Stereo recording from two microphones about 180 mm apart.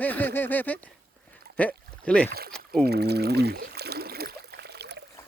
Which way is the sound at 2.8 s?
65° right (ahead or behind).